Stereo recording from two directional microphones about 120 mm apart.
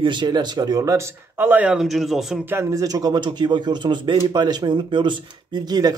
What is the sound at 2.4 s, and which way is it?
Speech, 20° right (ahead or behind).